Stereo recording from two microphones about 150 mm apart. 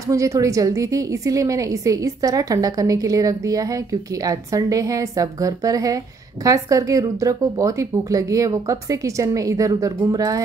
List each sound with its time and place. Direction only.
0.1 s a woman's voice: 20° right (ahead or behind)